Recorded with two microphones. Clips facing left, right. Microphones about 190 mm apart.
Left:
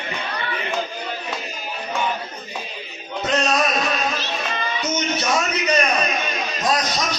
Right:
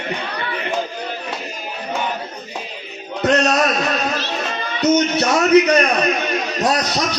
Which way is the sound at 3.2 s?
70° right (ahead or behind).